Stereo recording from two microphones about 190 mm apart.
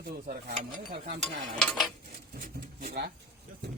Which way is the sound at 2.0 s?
50° right (ahead or behind).